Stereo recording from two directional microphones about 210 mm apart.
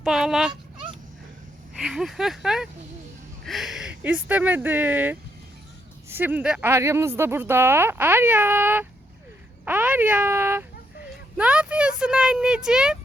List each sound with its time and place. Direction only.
0.0 s speech: centre (ahead or behind)
1.8 s speech: centre (ahead or behind)